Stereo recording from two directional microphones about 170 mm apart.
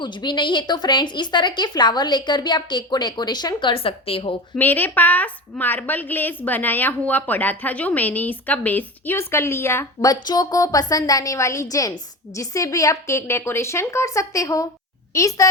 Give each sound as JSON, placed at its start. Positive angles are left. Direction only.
{"t": 0.0, "sound": "a woman's voice", "side_deg": 25}
{"t": 4.5, "sound": "a woman's voice", "side_deg": 10}